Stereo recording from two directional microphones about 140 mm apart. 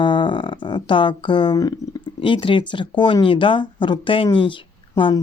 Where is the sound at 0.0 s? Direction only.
35° left (ahead or behind).